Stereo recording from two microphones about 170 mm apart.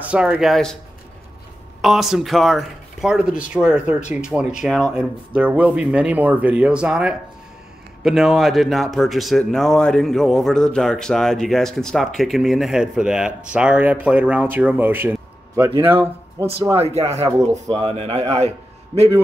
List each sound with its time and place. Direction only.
0.0 s speech: 10° right (ahead or behind)
1.8 s speech: centre (ahead or behind)
16.8 s speech: 40° right (ahead or behind)